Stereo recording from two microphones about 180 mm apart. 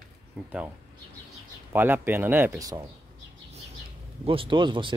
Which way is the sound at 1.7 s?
10° right (ahead or behind).